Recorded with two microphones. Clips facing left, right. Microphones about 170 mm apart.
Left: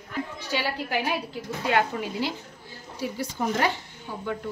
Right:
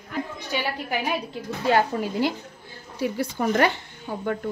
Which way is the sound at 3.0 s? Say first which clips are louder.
Right 4 dB; 60° right (ahead or behind).